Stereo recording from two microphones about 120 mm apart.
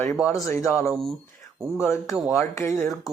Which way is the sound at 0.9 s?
5° left (ahead or behind).